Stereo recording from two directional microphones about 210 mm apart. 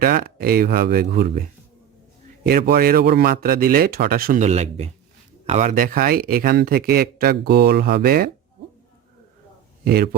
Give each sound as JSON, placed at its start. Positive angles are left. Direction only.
{"t": 0.0, "sound": "speech", "side_deg": -45}
{"t": 2.5, "sound": "speech", "side_deg": -45}
{"t": 9.8, "sound": "speech", "side_deg": -45}